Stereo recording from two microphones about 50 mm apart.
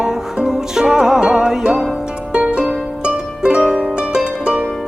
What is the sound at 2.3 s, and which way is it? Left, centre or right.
Harp, right.